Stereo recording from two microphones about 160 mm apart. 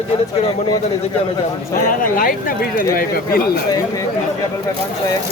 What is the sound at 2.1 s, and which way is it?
Speech, 60° left (ahead or behind).